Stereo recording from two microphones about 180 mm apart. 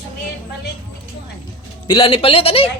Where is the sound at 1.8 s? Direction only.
25° left (ahead or behind).